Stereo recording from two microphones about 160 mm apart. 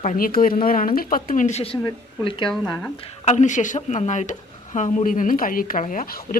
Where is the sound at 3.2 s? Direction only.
50° left (ahead or behind).